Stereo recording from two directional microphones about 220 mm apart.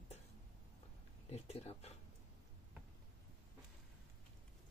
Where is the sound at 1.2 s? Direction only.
30° left (ahead or behind).